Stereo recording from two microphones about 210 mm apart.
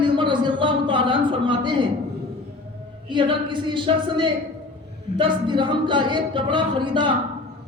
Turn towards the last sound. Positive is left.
turn(degrees=-20)  # may be behind; listen again after turning